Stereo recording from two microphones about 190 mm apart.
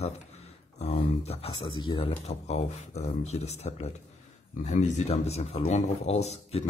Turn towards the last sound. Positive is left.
turn(degrees=35)  # may be behind; listen again after turning